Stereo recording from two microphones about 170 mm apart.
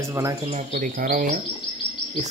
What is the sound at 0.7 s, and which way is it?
Speech, 55° right (ahead or behind).